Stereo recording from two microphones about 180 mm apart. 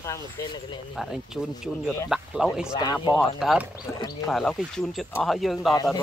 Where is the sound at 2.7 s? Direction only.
25° left (ahead or behind).